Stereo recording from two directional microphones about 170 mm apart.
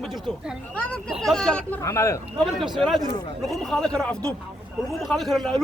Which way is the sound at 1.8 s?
15° left (ahead or behind).